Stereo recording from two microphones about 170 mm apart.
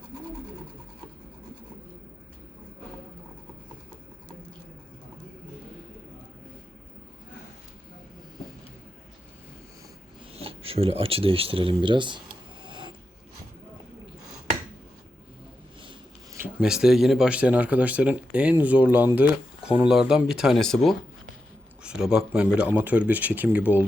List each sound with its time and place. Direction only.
10.3 s speech: 35° right (ahead or behind)
12.6 s mechanisms: 25° right (ahead or behind)
16.3 s speech: 10° right (ahead or behind)